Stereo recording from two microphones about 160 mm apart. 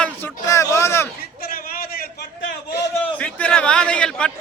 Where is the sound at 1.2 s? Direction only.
65° left (ahead or behind).